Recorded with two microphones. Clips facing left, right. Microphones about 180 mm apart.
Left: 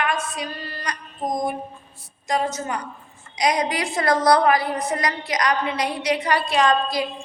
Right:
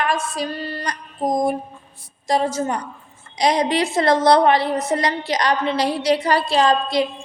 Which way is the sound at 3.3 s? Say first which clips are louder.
Right 4 dB; 30° right (ahead or behind).